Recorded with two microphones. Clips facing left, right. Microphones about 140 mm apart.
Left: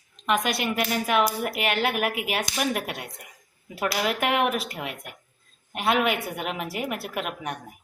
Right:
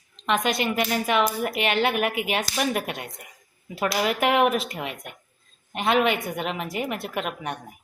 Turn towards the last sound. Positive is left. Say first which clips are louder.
# right 1 dB
turn(degrees=5)  # may be behind; listen again after turning